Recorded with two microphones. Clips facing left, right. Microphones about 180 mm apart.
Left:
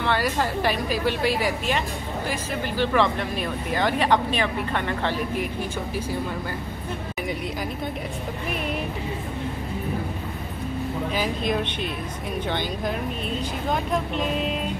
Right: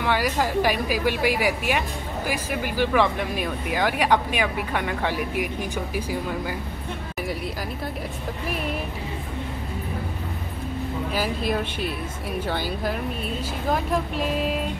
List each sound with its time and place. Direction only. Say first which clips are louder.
0.0 s a woman's voice: right 1 dB; 10° right (ahead or behind)
11.1 s speech: even; 5° right (ahead or behind)